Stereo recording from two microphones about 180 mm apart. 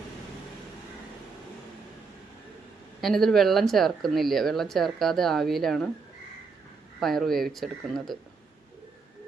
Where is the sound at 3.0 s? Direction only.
Centre (ahead or behind).